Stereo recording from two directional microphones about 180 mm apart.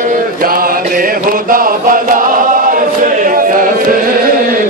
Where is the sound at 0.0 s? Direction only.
50° right (ahead or behind).